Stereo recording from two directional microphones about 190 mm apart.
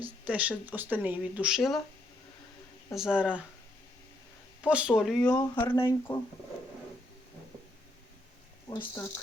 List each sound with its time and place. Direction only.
0.0 s speech: 5° right (ahead or behind)
2.9 s speech: 5° right (ahead or behind)
4.6 s speech: 5° right (ahead or behind)
5.3 s speech: 15° left (ahead or behind)
8.8 s speech: 10° left (ahead or behind)